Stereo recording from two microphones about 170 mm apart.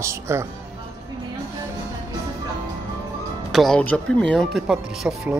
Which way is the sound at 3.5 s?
Centre (ahead or behind).